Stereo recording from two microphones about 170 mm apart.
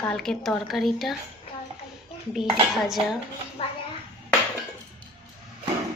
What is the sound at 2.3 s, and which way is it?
Speech, centre (ahead or behind).